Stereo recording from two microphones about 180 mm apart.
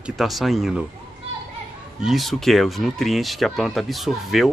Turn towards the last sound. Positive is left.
turn(degrees=0)  # may be behind; listen again after turning